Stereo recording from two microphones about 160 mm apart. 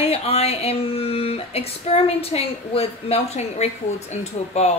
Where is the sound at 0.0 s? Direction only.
40° left (ahead or behind).